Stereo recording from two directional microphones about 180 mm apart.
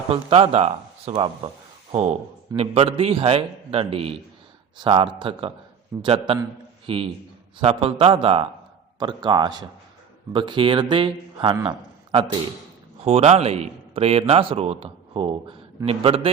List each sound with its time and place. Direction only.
0.1 s a man's voice: 30° right (ahead or behind)
13.0 s a man's voice: 35° right (ahead or behind)